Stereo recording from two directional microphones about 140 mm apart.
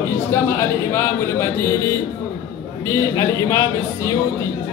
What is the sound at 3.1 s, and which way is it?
Speech, 20° left (ahead or behind).